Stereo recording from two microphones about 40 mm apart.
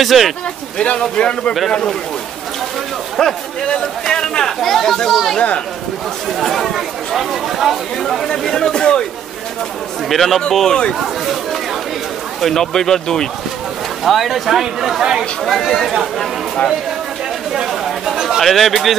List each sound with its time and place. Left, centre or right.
0.0 s speech: centre
0.7 s a man's voice: left
3.2 s speech: centre
6.4 s speech: centre
7.2 s speech: centre
8.0 s speech: centre
8.5 s speech: centre
10.0 s speech: centre
12.4 s speech: centre
14.0 s speech: centre
15.4 s speech: centre
17.5 s a sound: centre
18.4 s speech: centre